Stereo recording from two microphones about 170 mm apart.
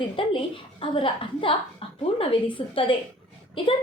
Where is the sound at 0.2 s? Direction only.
30° left (ahead or behind).